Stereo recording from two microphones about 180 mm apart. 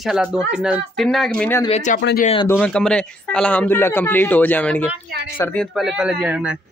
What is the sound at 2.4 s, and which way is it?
Speech, 10° left (ahead or behind).